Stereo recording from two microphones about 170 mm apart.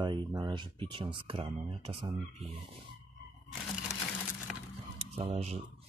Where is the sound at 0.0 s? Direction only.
25° right (ahead or behind).